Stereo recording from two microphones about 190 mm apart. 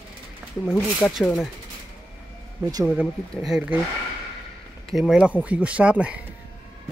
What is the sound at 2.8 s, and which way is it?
Speech, 5° right (ahead or behind).